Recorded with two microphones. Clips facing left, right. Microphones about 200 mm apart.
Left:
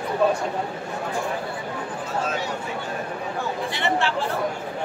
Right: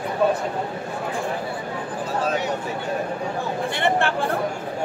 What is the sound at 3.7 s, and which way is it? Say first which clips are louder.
Speech: right 3 dB; 55° right (ahead or behind).